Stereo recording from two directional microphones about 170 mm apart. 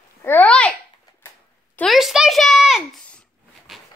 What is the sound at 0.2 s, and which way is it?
Babbling, 10° left (ahead or behind).